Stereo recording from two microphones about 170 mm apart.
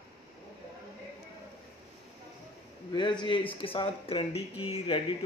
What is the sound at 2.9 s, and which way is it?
Speech, 25° left (ahead or behind).